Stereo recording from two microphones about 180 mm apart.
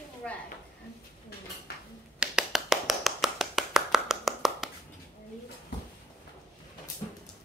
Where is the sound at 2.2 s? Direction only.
5° right (ahead or behind).